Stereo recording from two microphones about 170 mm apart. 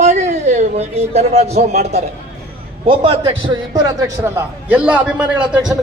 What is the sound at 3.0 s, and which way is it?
A man's voice, 30° right (ahead or behind).